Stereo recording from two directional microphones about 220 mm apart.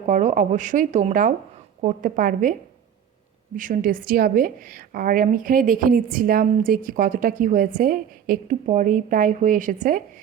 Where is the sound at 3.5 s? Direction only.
40° right (ahead or behind).